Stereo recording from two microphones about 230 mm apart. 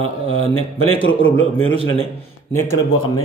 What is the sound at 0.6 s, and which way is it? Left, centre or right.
A man's voice, left.